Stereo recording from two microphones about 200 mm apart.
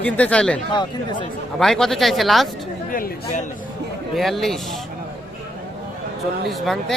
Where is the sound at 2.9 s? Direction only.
45° left (ahead or behind).